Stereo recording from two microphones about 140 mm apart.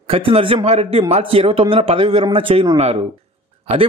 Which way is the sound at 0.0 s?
45° right (ahead or behind).